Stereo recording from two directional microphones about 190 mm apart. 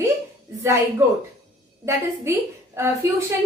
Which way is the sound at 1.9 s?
15° right (ahead or behind).